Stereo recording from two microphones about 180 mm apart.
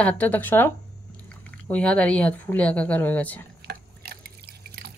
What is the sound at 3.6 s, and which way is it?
Drip, 65° right (ahead or behind).